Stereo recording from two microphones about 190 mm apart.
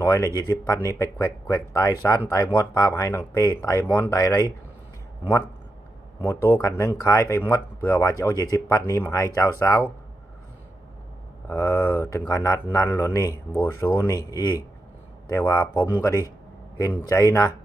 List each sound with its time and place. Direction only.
0.0 s speech: 15° left (ahead or behind)
6.2 s speech: 15° left (ahead or behind)
11.4 s speech: 15° left (ahead or behind)